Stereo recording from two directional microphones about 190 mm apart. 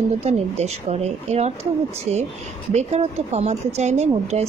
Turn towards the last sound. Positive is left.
turn(degrees=-35)  # may be behind; listen again after turning